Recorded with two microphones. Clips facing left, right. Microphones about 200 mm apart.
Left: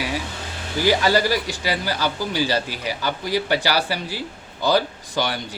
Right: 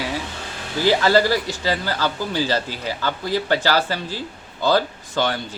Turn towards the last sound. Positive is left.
turn(degrees=15)  # may be behind; listen again after turning